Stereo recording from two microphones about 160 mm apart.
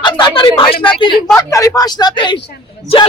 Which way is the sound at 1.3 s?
20° left (ahead or behind).